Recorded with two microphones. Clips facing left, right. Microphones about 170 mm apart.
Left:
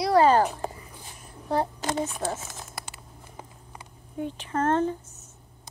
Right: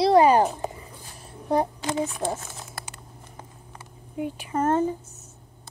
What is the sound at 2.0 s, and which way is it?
Speech, 10° right (ahead or behind).